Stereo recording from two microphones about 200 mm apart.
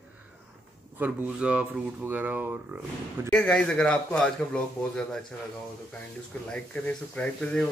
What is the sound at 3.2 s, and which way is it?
Speech, 5° left (ahead or behind).